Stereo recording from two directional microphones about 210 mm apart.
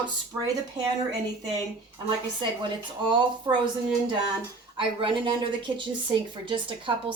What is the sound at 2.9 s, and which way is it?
Speech, 20° right (ahead or behind).